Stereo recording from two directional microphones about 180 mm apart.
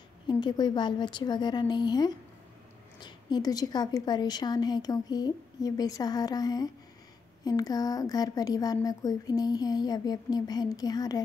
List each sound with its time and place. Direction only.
0.3 s speech: 25° left (ahead or behind)